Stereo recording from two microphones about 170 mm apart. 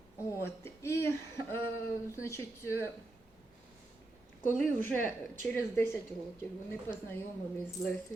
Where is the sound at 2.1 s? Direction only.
15° left (ahead or behind).